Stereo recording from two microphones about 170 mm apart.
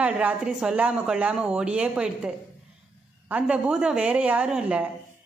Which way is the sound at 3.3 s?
5° right (ahead or behind).